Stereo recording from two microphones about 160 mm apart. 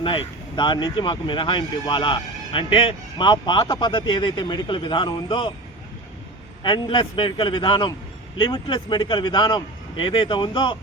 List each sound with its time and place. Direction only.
0.0 s speech: 35° left (ahead or behind)
6.6 s speech: 30° left (ahead or behind)